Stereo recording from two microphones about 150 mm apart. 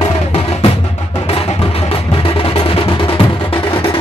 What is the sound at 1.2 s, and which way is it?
Music, 40° left (ahead or behind).